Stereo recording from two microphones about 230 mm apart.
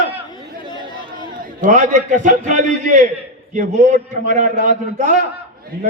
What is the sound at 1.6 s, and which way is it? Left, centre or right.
A man's voice, right.